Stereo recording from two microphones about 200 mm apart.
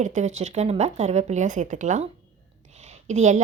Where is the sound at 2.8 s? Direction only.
35° right (ahead or behind).